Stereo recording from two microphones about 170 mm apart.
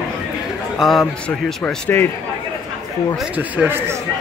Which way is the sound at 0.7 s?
Centre (ahead or behind).